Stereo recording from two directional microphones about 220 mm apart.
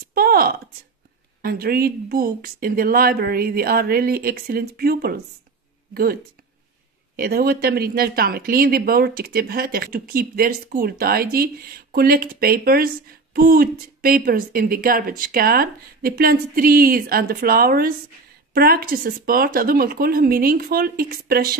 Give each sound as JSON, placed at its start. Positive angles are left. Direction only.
{"t": 0.1, "sound": "speech", "side_deg": -45}
{"t": 7.2, "sound": "speech", "side_deg": -45}